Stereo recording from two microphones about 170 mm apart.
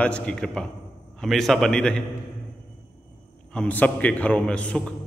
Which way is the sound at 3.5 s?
5° left (ahead or behind).